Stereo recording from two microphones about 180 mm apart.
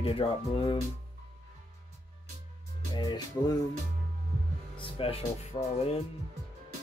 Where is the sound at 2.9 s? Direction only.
25° left (ahead or behind).